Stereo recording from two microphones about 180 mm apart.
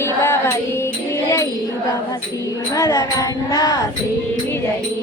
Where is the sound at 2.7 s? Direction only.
20° left (ahead or behind).